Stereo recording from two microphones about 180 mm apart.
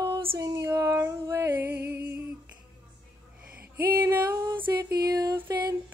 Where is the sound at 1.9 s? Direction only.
60° right (ahead or behind).